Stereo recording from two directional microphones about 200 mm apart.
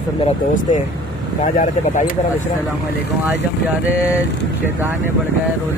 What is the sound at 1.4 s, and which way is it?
Speech, 40° left (ahead or behind).